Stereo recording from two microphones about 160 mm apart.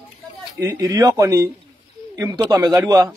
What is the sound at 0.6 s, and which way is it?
Speech, 20° right (ahead or behind).